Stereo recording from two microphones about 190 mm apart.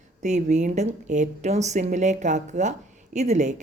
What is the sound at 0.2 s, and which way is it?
Speech, 40° right (ahead or behind).